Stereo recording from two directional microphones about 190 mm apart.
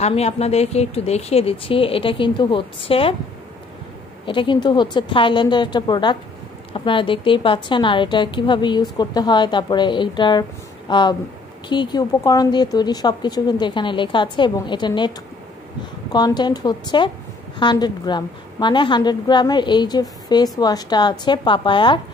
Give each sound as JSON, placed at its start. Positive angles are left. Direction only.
{"t": 0.0, "sound": "speech", "side_deg": 35}
{"t": 4.3, "sound": "speech", "side_deg": 25}